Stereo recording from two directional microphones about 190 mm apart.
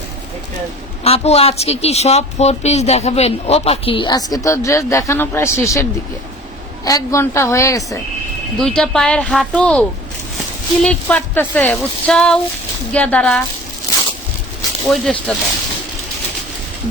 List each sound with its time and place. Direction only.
1.0 s speech: 30° left (ahead or behind); by 5.8 s 15° left (ahead or behind)
6.8 s speech: 15° left (ahead or behind)
8.5 s speech: 5° left (ahead or behind)
10.8 s speech: 5° left (ahead or behind)
14.8 s speech: 5° left (ahead or behind)